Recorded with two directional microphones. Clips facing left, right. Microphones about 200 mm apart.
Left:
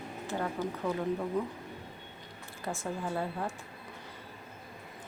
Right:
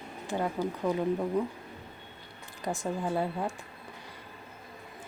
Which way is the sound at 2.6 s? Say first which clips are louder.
Right 4 dB; 15° right (ahead or behind).